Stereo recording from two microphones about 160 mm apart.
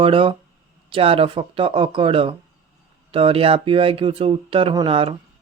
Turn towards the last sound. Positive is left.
turn(degrees=-35)  # may be behind; listen again after turning